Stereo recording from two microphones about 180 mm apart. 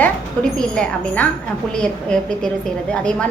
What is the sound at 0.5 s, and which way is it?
Speech, 5° left (ahead or behind).